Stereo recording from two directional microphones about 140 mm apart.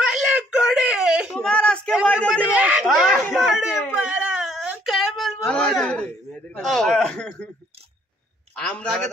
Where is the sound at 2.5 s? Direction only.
10° right (ahead or behind).